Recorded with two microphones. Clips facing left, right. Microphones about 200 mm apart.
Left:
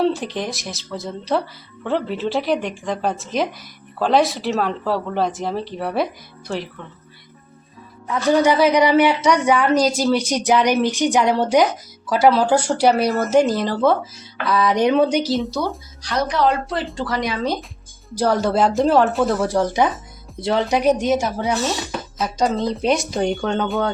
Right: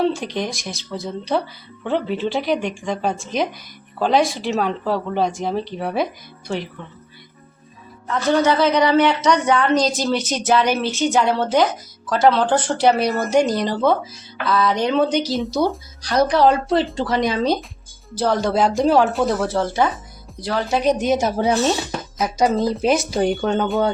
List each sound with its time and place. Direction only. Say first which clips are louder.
0.0 s speech: even; centre (ahead or behind)
8.0 s a woman's voice: left 1 dB; 10° left (ahead or behind)
14.4 s a woman's voice: left 2 dB; 15° left (ahead or behind)
16.0 s a woman's voice: right 4 dB; 35° right (ahead or behind)
18.1 s speech: left 1 dB; 10° left (ahead or behind)
19.5 s a woman's voice: left 1 dB; 15° left (ahead or behind)
21.2 s speech: right 3 dB; 25° right (ahead or behind)
22.2 s speech: right 2 dB; 10° right (ahead or behind)